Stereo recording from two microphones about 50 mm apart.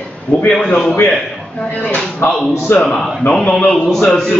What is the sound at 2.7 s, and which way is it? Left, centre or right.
Speech, left.